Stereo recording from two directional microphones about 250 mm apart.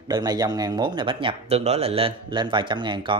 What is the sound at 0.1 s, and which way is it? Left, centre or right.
Speech, centre.